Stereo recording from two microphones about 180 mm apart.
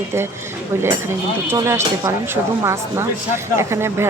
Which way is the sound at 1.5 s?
15° right (ahead or behind).